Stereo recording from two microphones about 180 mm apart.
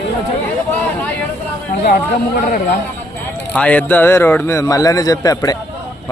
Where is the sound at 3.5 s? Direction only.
10° left (ahead or behind).